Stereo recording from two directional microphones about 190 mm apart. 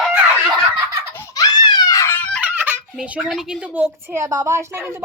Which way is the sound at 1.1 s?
20° left (ahead or behind).